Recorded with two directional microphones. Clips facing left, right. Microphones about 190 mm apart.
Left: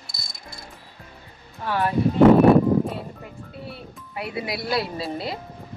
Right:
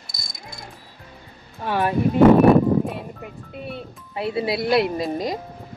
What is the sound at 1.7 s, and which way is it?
Speech, 15° right (ahead or behind).